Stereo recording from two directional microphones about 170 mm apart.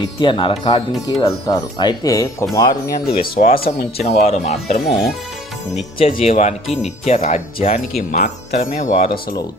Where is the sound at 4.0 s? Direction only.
40° left (ahead or behind).